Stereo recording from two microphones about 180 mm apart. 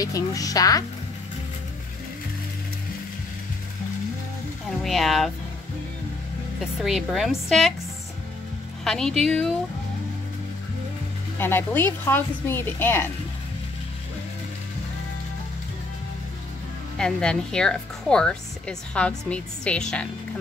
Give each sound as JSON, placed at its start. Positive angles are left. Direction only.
{"t": 0.0, "sound": "a woman's voice", "side_deg": 20}
{"t": 4.6, "sound": "speech", "side_deg": 0}
{"t": 6.6, "sound": "speech", "side_deg": 0}
{"t": 8.8, "sound": "speech", "side_deg": 5}
{"t": 11.3, "sound": "a woman's voice", "side_deg": 10}
{"t": 17.0, "sound": "speech", "side_deg": 5}